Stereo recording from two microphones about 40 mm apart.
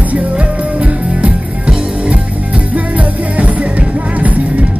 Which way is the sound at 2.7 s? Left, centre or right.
Right.